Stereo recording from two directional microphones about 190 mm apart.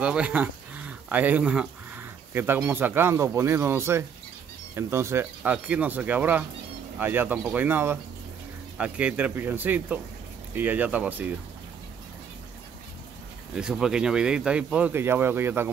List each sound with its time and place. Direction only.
0.0 s speech: 5° right (ahead or behind)
13.6 s speech: 5° right (ahead or behind)